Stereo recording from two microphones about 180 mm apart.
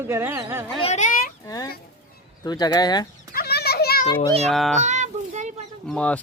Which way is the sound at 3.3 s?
60° left (ahead or behind).